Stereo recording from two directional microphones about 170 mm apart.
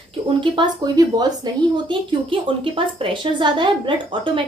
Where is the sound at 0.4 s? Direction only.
25° right (ahead or behind).